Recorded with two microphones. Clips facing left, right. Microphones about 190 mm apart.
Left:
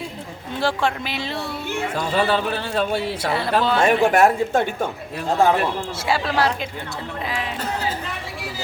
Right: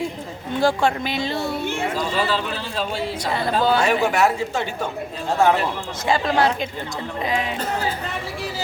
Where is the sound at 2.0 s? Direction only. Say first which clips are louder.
Left 5 dB; 55° left (ahead or behind).